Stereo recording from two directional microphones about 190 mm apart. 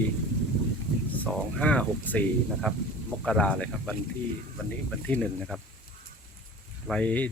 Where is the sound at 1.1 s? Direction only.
5° left (ahead or behind).